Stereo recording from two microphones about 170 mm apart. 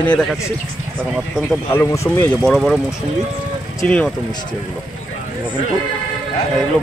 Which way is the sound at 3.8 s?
5° left (ahead or behind).